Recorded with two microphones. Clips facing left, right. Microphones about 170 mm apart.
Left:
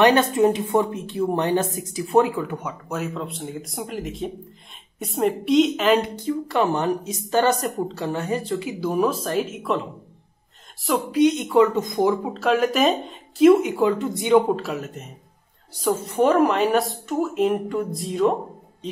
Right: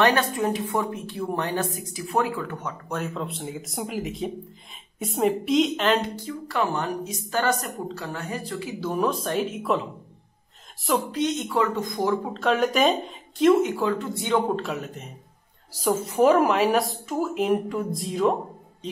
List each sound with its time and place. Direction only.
0.0 s a woman's voice: 20° left (ahead or behind); by 6.0 s 5° left (ahead or behind)
6.4 s speech: 25° left (ahead or behind)
8.9 s a woman's voice: 5° left (ahead or behind)
11.1 s speech: 15° left (ahead or behind)
12.4 s speech: 5° left (ahead or behind)
14.5 s a woman's voice: 5° left (ahead or behind)